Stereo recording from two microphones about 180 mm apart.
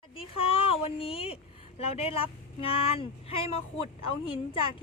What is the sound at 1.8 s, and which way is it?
Speech, 35° left (ahead or behind).